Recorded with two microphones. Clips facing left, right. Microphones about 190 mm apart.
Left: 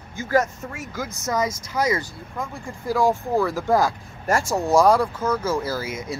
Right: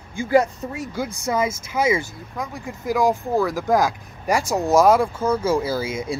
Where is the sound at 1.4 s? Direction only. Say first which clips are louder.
Right 1 dB; 25° right (ahead or behind).